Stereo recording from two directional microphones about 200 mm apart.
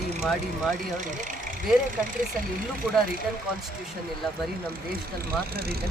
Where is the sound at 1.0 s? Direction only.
40° right (ahead or behind).